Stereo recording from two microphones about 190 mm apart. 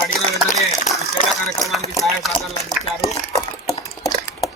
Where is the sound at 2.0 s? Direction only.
Centre (ahead or behind).